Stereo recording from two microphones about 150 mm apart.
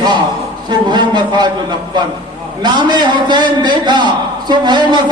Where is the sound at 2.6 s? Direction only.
30° right (ahead or behind).